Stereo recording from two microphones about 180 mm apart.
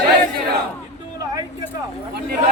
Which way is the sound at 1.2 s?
20° right (ahead or behind).